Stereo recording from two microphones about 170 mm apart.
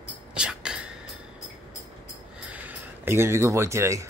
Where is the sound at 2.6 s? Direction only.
15° right (ahead or behind).